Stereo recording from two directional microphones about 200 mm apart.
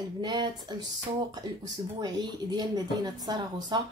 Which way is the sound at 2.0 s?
20° right (ahead or behind).